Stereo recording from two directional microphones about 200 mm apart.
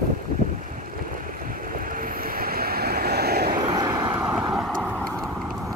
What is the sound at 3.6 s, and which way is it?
Vehicle, 20° right (ahead or behind).